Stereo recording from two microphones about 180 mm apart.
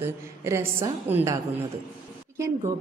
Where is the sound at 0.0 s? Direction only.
15° right (ahead or behind).